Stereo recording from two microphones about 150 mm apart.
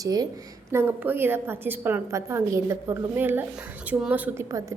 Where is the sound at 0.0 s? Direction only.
25° right (ahead or behind).